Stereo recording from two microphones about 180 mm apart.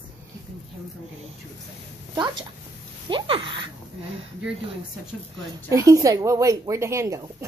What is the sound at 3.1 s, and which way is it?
Speech, 25° right (ahead or behind).